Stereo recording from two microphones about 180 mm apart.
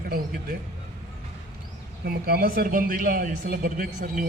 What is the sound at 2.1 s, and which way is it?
Speech, 55° right (ahead or behind).